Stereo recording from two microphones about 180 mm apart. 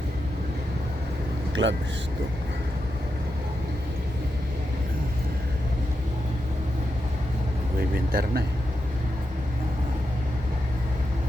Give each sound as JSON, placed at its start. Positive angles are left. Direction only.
{"t": 1.6, "sound": "speech", "side_deg": -85}
{"t": 7.9, "sound": "speech", "side_deg": -55}